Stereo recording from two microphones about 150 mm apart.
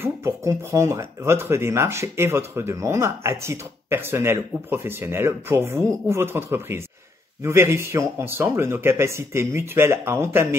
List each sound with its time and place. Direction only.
0.0 s speech: 20° right (ahead or behind)